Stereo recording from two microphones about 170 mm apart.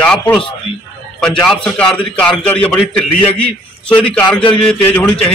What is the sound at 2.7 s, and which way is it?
Speech, 30° left (ahead or behind).